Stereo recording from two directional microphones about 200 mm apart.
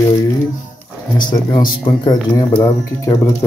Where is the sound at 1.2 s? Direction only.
20° left (ahead or behind).